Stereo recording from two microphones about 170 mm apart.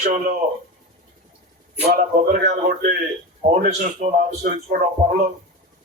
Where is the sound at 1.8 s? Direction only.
60° right (ahead or behind).